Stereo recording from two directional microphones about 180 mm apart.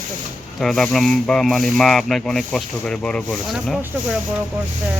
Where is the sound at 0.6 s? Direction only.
Centre (ahead or behind).